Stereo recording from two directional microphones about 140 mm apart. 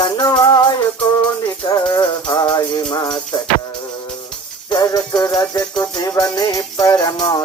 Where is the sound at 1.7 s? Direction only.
25° left (ahead or behind).